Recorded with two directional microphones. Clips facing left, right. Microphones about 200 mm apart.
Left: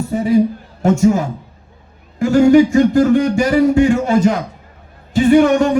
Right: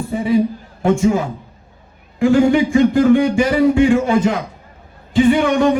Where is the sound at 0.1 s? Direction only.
45° left (ahead or behind).